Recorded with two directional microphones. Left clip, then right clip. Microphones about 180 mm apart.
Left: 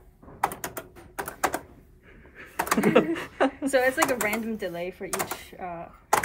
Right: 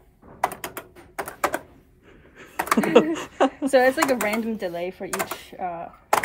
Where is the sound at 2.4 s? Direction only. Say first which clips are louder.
Right 3 dB; 20° right (ahead or behind).